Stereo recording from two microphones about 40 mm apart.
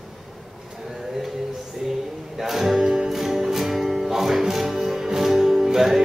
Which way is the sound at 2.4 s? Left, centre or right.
Centre.